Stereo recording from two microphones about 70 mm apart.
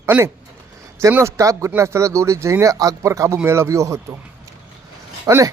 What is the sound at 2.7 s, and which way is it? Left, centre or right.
Speech, right.